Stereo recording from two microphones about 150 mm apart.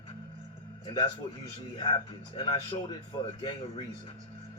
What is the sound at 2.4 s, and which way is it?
A man's voice, 35° left (ahead or behind).